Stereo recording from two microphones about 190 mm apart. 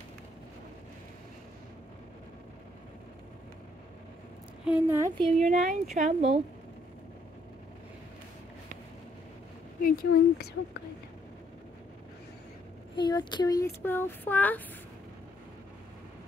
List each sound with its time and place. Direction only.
4.6 s speech: 10° right (ahead or behind)
5.1 s a woman's voice: centre (ahead or behind)
5.9 s speech: 35° right (ahead or behind)
9.8 s speech: 50° left (ahead or behind)
12.9 s speech: 25° left (ahead or behind)